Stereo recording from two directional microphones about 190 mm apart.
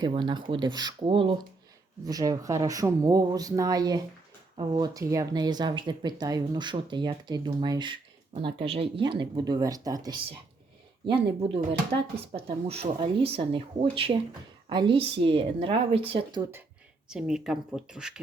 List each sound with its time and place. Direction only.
0.0 s speech: 25° right (ahead or behind)
17.1 s speech: 5° right (ahead or behind)